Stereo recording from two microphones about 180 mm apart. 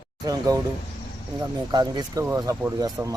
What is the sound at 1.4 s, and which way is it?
Speech, 25° right (ahead or behind).